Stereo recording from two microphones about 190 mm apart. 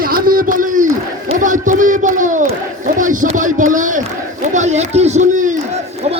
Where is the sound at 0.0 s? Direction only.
50° right (ahead or behind).